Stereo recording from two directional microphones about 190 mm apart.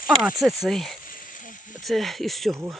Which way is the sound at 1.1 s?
45° left (ahead or behind).